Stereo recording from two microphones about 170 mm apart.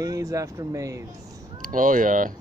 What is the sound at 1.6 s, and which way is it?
Speech, 50° right (ahead or behind).